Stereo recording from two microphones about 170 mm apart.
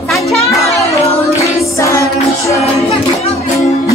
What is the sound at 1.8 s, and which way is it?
Music, 15° left (ahead or behind).